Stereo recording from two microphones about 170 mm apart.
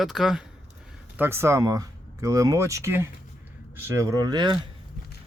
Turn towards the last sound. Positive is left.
turn(degrees=-25)  # may be behind; listen again after turning